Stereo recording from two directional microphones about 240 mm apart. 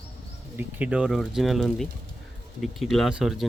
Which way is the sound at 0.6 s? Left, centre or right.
Centre.